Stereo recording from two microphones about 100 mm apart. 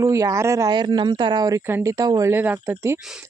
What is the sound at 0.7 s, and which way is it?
Speech, 50° right (ahead or behind).